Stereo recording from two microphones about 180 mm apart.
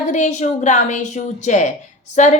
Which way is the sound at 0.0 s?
40° left (ahead or behind).